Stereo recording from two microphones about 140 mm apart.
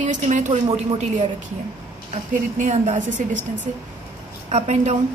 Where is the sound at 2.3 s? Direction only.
60° right (ahead or behind).